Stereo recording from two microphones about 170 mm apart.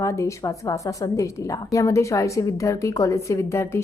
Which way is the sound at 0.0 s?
15° left (ahead or behind).